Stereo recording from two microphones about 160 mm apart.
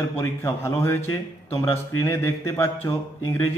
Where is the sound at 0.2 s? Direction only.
15° left (ahead or behind).